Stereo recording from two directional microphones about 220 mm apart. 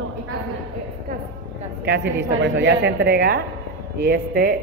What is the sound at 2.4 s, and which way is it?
Speech, 55° right (ahead or behind).